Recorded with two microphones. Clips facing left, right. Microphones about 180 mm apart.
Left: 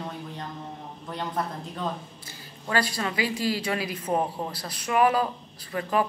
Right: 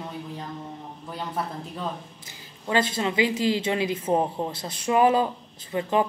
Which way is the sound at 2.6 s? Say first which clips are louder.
Right 3 dB; 20° right (ahead or behind).